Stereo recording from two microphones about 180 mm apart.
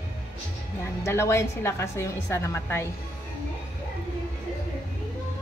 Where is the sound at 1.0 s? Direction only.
15° left (ahead or behind).